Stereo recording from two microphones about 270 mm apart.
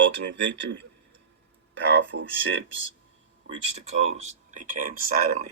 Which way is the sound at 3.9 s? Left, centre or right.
Right.